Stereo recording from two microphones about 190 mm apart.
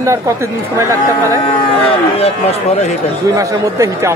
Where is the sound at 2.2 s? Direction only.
35° left (ahead or behind).